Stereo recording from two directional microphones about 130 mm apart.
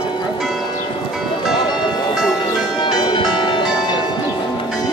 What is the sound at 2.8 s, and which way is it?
Change ringing, 35° left (ahead or behind).